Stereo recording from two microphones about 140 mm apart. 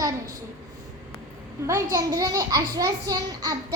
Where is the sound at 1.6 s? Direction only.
25° right (ahead or behind).